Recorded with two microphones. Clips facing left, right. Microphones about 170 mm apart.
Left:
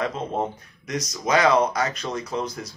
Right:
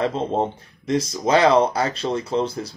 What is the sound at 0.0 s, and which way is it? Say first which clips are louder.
Speech: right 4 dB; 30° right (ahead or behind).